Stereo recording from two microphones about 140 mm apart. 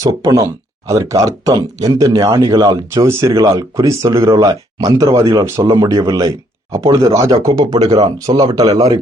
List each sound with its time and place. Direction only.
0.0 s speech: 25° right (ahead or behind)
8.7 s a man's voice: 45° right (ahead or behind)